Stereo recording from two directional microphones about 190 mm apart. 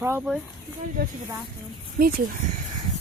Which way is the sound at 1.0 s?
50° right (ahead or behind).